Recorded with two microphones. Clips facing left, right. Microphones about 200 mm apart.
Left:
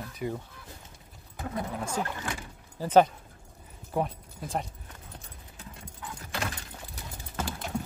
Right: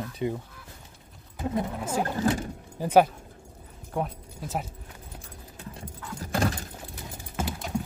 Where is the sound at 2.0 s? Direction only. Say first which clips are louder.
Right 12 dB; 35° right (ahead or behind).